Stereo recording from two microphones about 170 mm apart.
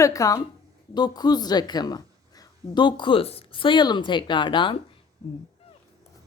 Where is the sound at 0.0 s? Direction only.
20° left (ahead or behind).